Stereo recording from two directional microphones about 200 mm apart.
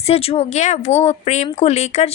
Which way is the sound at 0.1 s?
30° left (ahead or behind).